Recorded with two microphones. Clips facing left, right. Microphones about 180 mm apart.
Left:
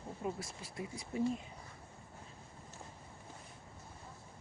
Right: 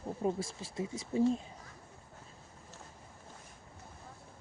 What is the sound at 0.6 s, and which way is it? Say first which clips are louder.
Speech: right 6 dB; 25° right (ahead or behind).